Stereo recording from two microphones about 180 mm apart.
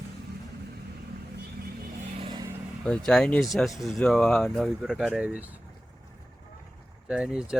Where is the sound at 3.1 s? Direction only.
5° left (ahead or behind).